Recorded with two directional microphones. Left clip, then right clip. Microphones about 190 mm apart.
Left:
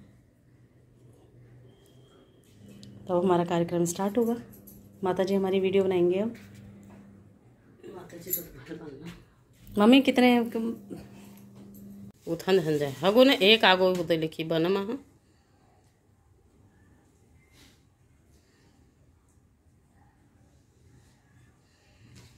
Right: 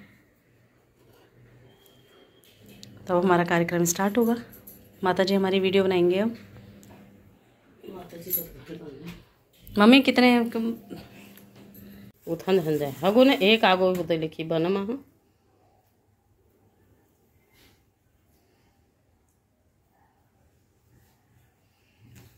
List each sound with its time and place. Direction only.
2.8 s speech: 15° left (ahead or behind)
9.7 s speech: 15° left (ahead or behind)
12.3 s speech: 5° left (ahead or behind)